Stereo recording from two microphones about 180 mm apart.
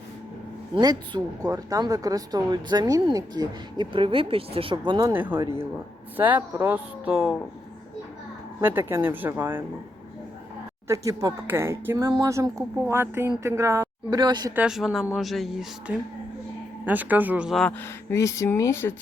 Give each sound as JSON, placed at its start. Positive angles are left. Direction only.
{"t": 0.8, "sound": "speech", "side_deg": -25}
{"t": 4.9, "sound": "speech", "side_deg": -20}
{"t": 8.6, "sound": "speech", "side_deg": -10}
{"t": 10.8, "sound": "speech", "side_deg": -15}
{"t": 14.5, "sound": "speech", "side_deg": -5}
{"t": 17.7, "sound": "speech", "side_deg": 15}